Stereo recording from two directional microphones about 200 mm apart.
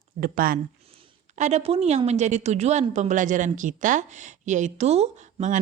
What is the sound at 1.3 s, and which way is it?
Speech, 35° right (ahead or behind).